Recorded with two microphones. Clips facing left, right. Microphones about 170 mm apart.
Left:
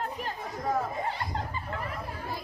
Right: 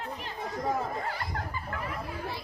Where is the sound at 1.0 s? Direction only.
20° left (ahead or behind).